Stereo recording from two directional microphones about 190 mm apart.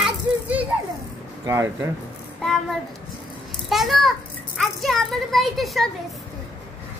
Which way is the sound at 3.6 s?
Centre (ahead or behind).